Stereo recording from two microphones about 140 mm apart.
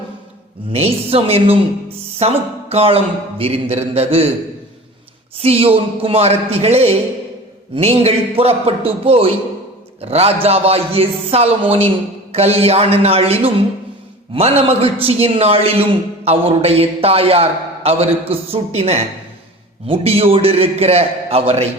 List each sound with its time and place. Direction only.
0.7 s a man's voice: 45° right (ahead or behind)
5.4 s a man's voice: 45° right (ahead or behind)